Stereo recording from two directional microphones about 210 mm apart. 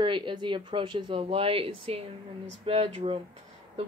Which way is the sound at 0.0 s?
20° right (ahead or behind).